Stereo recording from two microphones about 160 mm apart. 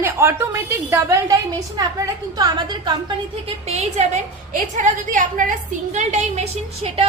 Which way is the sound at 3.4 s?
40° right (ahead or behind).